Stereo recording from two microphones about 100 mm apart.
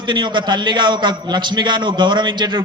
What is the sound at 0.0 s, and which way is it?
A man's voice, 50° right (ahead or behind).